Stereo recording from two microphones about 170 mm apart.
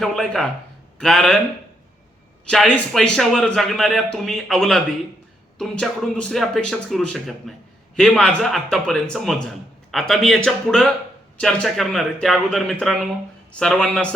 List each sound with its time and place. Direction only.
0.0 s a man's voice: centre (ahead or behind)
2.5 s a man's voice: 5° left (ahead or behind)